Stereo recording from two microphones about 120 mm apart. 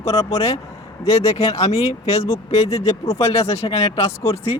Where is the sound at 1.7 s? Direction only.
60° left (ahead or behind).